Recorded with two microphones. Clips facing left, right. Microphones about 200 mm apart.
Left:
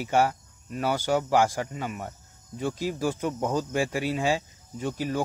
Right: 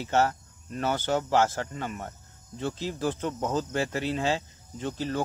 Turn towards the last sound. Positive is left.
turn(degrees=10)  # may be behind; listen again after turning